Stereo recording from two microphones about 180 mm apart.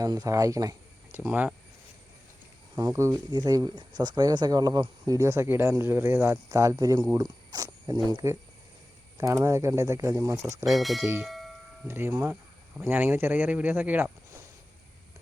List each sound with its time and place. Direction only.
0.0 s speech: 20° right (ahead or behind)
2.7 s speech: 15° right (ahead or behind)
10.7 s speech: centre (ahead or behind)
11.0 s speech: 15° right (ahead or behind)
11.3 s a sound: centre (ahead or behind)
11.9 s speech: 10° right (ahead or behind)